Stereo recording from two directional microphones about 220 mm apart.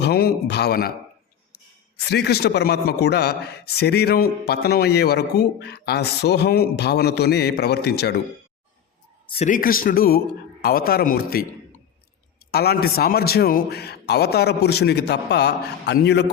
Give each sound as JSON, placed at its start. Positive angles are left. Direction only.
{"t": 0.0, "sound": "a sound", "side_deg": 45}
{"t": 2.0, "sound": "a man's voice", "side_deg": 45}
{"t": 9.2, "sound": "a man's voice", "side_deg": 25}
{"t": 9.5, "sound": "a man's voice", "side_deg": 40}
{"t": 12.5, "sound": "a man's voice", "side_deg": 45}